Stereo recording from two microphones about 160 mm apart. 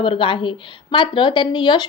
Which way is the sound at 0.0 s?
30° left (ahead or behind).